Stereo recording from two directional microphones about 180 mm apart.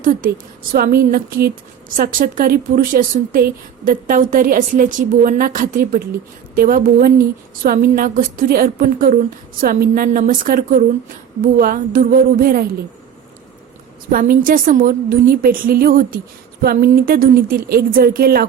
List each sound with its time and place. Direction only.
0.0 s a woman's voice: 50° right (ahead or behind)
14.1 s a woman's voice: 50° right (ahead or behind)